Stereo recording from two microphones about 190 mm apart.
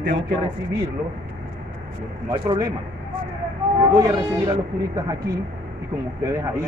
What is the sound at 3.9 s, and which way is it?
Speech, 20° right (ahead or behind).